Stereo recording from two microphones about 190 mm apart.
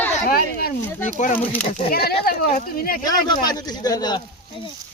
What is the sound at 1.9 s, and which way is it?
Speech, 55° left (ahead or behind).